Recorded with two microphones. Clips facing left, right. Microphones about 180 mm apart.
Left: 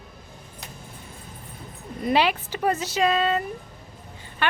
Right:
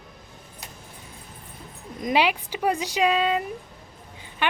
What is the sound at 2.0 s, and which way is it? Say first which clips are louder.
A woman's voice: left 1 dB; 10° right (ahead or behind).